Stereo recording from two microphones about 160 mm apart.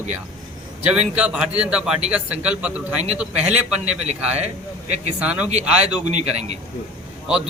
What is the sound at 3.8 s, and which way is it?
A man's voice, 45° right (ahead or behind).